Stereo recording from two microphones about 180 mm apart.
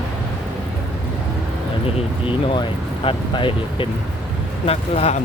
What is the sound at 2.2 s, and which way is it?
Speech, 30° left (ahead or behind).